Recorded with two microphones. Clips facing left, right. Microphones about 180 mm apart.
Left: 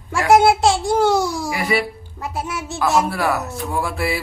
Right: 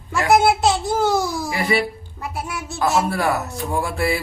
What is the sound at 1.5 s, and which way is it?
Speech, 10° left (ahead or behind).